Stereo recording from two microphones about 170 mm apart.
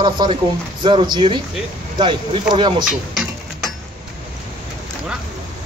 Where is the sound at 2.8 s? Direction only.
Centre (ahead or behind).